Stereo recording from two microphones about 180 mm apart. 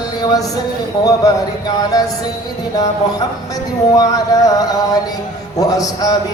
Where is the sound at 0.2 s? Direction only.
20° left (ahead or behind).